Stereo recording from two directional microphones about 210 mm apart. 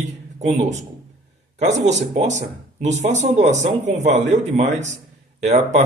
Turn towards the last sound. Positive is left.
turn(degrees=-30)  # may be behind; listen again after turning